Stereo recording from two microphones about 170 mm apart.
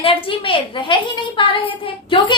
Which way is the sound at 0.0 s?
30° left (ahead or behind).